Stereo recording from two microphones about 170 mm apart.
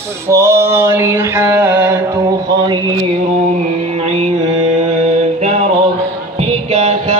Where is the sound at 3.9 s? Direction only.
35° right (ahead or behind).